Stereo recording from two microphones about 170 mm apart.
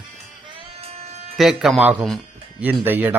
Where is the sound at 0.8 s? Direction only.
35° right (ahead or behind).